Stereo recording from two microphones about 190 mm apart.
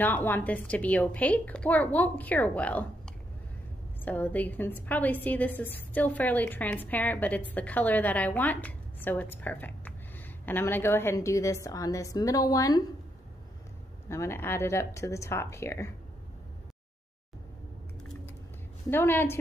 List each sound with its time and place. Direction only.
0.0 s a woman's voice: 10° left (ahead or behind)
4.0 s a woman's voice: 10° left (ahead or behind)
14.0 s a woman's voice: 15° left (ahead or behind)
18.9 s a woman's voice: 10° left (ahead or behind)